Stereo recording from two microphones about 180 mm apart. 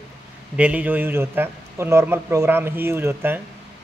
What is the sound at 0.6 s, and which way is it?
A man's voice, 10° right (ahead or behind).